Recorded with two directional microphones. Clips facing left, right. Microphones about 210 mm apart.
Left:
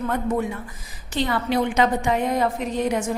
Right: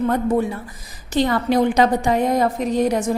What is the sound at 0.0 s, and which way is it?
A woman's voice, 35° right (ahead or behind).